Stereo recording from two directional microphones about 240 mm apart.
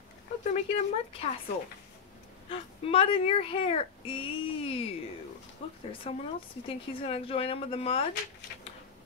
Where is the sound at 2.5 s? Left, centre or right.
Left.